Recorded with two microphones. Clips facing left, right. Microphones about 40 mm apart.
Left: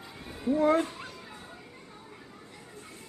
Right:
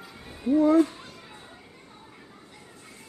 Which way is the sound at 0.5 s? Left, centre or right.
Left.